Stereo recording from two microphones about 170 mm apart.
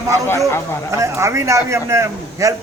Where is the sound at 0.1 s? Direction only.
15° left (ahead or behind).